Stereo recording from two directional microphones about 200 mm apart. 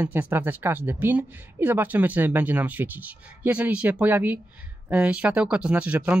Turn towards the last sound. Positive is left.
turn(degrees=-5)  # may be behind; listen again after turning